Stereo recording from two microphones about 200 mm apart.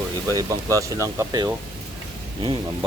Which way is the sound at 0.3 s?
15° right (ahead or behind).